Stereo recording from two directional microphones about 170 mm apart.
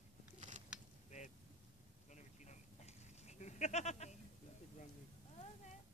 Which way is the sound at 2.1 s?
45° left (ahead or behind).